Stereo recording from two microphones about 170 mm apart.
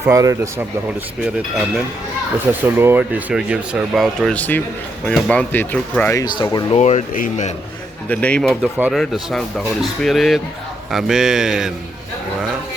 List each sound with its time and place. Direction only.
0.0 s speech: 20° right (ahead or behind)
2.5 s speech: 10° right (ahead or behind); by 6.2 s 15° left (ahead or behind)
6.2 s speech: 25° left (ahead or behind)
6.7 s speech: 40° left (ahead or behind)
8.1 s speech: 5° left (ahead or behind)